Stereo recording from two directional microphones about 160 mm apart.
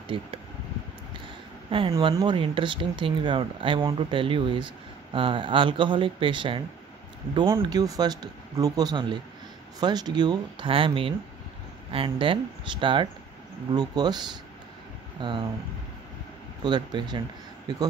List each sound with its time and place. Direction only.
0.1 s speech: 35° right (ahead or behind)
1.7 s speech: 35° right (ahead or behind)
16.6 s speech: 25° right (ahead or behind)